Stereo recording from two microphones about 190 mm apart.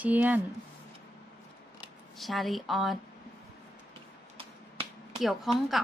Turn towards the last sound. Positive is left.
turn(degrees=0)  # may be behind; listen again after turning